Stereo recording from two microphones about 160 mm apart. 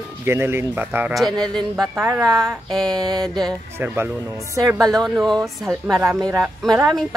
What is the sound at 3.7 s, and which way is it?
Speech, 15° right (ahead or behind).